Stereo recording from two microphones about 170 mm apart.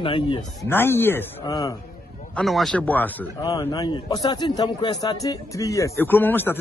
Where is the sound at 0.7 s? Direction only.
15° left (ahead or behind).